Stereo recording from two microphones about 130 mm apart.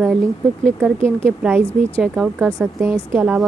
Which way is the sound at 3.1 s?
15° right (ahead or behind).